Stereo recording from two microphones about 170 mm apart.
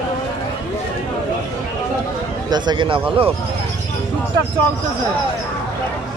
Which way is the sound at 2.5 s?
25° right (ahead or behind).